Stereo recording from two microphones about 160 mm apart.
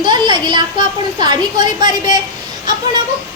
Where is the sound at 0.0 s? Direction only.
30° right (ahead or behind).